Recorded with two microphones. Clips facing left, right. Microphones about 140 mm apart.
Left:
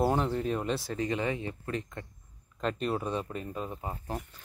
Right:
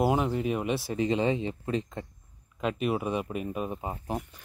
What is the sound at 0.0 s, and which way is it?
Speech, 5° right (ahead or behind).